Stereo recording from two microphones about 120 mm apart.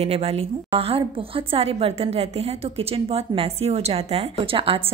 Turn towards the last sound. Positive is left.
turn(degrees=-50)  # may be behind; listen again after turning